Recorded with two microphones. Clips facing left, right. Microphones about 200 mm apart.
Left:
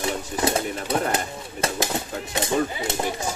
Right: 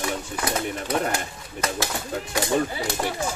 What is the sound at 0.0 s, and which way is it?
Bird, 25° left (ahead or behind).